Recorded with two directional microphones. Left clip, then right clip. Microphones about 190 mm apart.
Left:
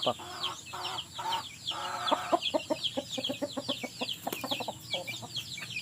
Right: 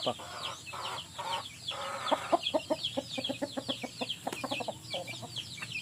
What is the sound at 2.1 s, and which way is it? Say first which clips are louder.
Chicken: even; 15° left (ahead or behind).